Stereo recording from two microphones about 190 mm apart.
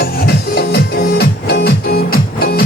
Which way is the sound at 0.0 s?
55° left (ahead or behind).